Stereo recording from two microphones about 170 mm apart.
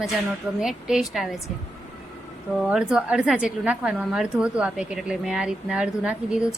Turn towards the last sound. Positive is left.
turn(degrees=-5)  # may be behind; listen again after turning